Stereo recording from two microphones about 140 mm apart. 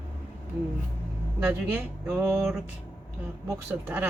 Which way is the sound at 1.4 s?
15° right (ahead or behind).